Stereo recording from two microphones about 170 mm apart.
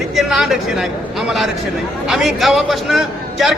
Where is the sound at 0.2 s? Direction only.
Centre (ahead or behind).